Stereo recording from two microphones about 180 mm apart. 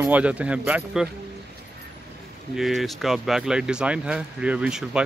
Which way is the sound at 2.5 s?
Centre (ahead or behind).